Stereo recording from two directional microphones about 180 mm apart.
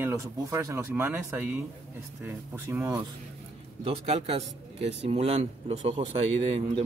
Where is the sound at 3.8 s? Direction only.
35° right (ahead or behind).